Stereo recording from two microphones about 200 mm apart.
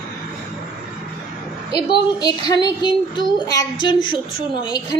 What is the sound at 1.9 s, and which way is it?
A child's voice, 20° left (ahead or behind).